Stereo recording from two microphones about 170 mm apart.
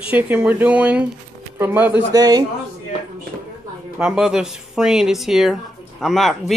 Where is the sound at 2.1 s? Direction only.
25° right (ahead or behind).